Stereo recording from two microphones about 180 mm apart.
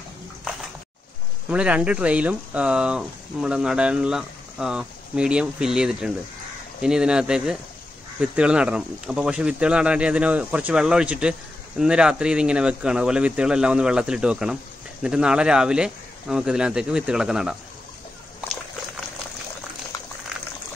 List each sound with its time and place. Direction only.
1.5 s speech: 5° right (ahead or behind)